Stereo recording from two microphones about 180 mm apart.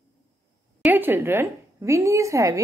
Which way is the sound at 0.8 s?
10° right (ahead or behind).